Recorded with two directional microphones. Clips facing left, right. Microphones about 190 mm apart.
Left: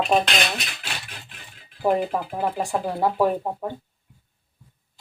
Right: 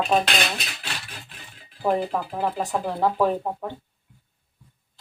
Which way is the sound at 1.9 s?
15° left (ahead or behind).